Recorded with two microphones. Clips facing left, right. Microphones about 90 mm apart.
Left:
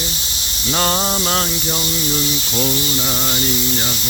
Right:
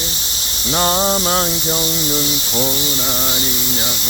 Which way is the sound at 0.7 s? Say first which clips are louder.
Right 2 dB; 15° right (ahead or behind).